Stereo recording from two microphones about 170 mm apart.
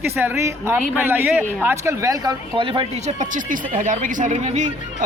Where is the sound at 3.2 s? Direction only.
50° right (ahead or behind).